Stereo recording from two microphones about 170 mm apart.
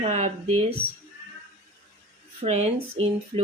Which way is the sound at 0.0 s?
40° right (ahead or behind).